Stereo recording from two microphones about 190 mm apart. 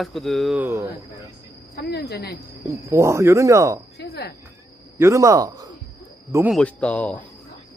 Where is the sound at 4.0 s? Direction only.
60° left (ahead or behind).